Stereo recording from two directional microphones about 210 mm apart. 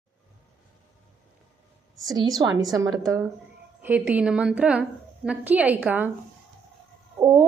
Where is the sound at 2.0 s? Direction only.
20° right (ahead or behind).